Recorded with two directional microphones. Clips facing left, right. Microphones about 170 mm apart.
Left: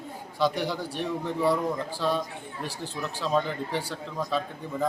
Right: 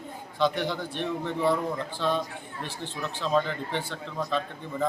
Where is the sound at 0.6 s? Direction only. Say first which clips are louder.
Even; 5° left (ahead or behind).